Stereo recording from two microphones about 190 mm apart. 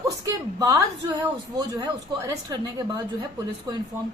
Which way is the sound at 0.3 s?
20° right (ahead or behind).